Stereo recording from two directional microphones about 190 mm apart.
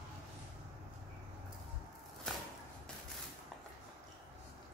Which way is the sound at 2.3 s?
Centre (ahead or behind).